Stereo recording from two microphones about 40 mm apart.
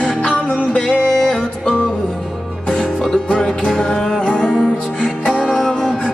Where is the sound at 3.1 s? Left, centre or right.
Left.